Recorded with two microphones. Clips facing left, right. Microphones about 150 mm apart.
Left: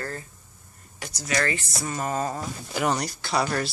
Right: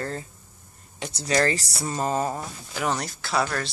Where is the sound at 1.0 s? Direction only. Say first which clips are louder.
Right 4 dB; 30° right (ahead or behind).